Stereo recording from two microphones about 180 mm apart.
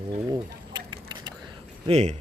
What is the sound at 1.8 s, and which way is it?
Speech, 40° right (ahead or behind).